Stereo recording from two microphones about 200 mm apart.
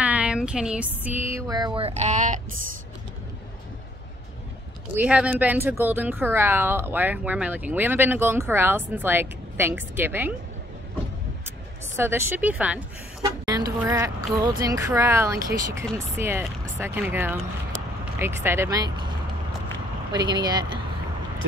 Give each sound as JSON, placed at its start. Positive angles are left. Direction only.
{"t": 0.0, "sound": "speech", "side_deg": -5}
{"t": 4.9, "sound": "speech", "side_deg": -5}
{"t": 12.0, "sound": "speech", "side_deg": -10}
{"t": 13.2, "sound": "speech", "side_deg": -20}
{"t": 20.1, "sound": "speech", "side_deg": -20}